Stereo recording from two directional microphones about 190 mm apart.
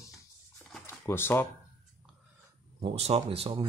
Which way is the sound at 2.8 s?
30° right (ahead or behind).